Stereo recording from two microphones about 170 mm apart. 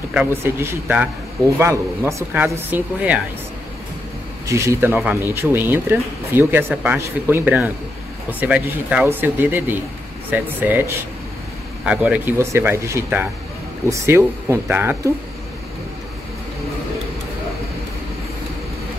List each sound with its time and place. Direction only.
0.1 s speech: 10° right (ahead or behind)
4.5 s speech: 15° right (ahead or behind)
11.8 s speech: 10° right (ahead or behind)